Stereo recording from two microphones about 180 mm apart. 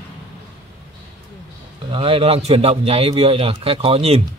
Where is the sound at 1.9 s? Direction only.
30° right (ahead or behind).